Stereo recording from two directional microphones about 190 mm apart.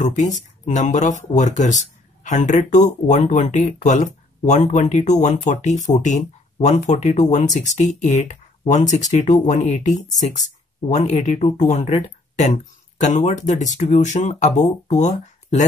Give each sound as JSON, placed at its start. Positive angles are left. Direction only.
{"t": 0.0, "sound": "speech", "side_deg": 40}